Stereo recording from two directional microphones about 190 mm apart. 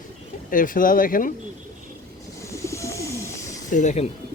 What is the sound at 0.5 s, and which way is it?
Speech, 45° left (ahead or behind).